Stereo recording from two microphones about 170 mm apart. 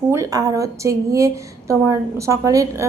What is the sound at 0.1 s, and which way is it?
A woman's voice, 20° right (ahead or behind).